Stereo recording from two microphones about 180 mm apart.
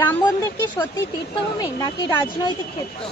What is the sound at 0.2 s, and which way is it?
Speech, 20° left (ahead or behind).